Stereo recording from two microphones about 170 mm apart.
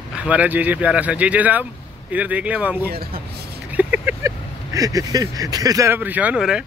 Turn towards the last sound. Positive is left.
turn(degrees=-5)  # may be behind; listen again after turning